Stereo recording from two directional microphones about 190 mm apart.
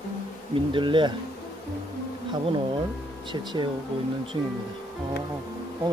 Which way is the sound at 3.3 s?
25° right (ahead or behind).